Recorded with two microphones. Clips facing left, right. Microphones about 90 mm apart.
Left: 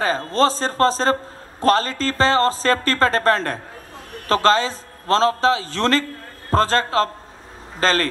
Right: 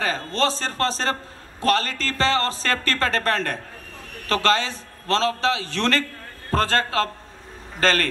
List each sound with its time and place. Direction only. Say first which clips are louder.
0.0 s speech: left 5 dB; 35° left (ahead or behind)